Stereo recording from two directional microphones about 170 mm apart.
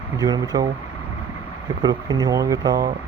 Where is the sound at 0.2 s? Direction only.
20° right (ahead or behind).